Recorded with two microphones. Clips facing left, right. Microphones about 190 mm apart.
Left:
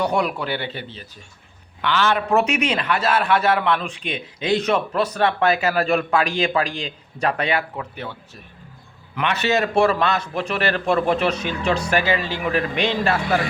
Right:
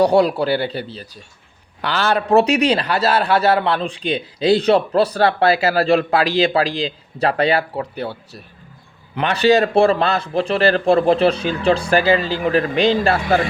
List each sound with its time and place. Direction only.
0.0 s a man's voice: 35° right (ahead or behind)